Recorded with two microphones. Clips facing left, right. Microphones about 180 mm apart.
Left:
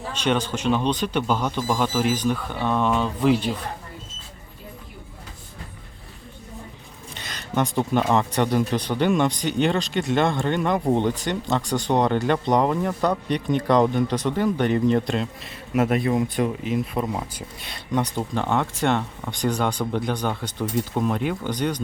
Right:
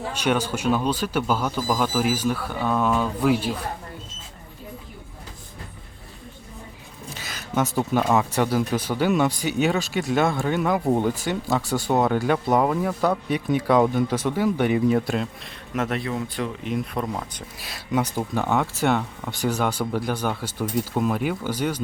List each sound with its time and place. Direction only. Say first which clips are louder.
0.1 s speech: left 1 dB; 10° right (ahead or behind)
7.1 s speech: even; 5° right (ahead or behind)
15.7 s speech: left 5 dB; 10° left (ahead or behind)
16.6 s speech: left 2 dB; centre (ahead or behind)
17.6 s speech: even; 5° right (ahead or behind)